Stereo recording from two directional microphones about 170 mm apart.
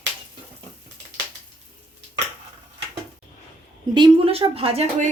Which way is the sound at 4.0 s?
30° right (ahead or behind).